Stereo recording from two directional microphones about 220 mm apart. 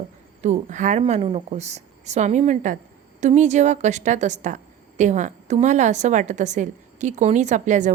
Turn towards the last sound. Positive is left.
turn(degrees=-35)  # may be behind; listen again after turning